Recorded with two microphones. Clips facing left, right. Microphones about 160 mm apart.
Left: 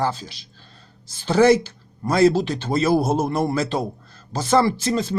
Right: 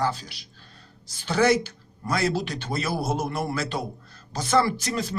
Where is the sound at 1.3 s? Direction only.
30° left (ahead or behind).